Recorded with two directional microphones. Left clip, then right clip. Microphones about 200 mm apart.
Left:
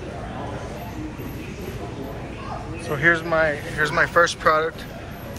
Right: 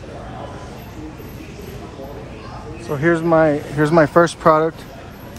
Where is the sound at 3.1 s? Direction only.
35° right (ahead or behind).